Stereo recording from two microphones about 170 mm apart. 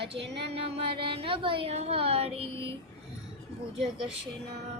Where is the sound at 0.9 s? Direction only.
30° right (ahead or behind).